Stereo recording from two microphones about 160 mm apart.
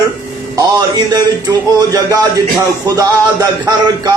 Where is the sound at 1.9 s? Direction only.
20° right (ahead or behind).